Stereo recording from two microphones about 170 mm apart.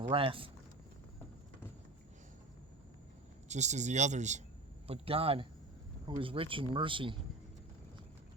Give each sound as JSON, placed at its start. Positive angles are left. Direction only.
{"t": 0.1, "sound": "speech", "side_deg": -30}
{"t": 3.5, "sound": "speech", "side_deg": -45}